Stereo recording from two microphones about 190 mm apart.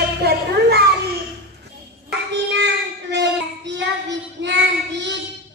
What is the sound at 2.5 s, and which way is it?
Child singing, 65° right (ahead or behind).